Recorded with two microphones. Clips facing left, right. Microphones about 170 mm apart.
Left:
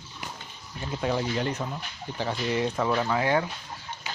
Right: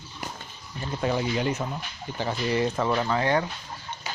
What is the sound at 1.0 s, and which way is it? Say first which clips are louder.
Speech: right 1 dB; centre (ahead or behind).